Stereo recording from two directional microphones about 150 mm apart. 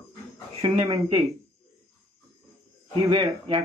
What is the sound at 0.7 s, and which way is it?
Speech, 25° right (ahead or behind).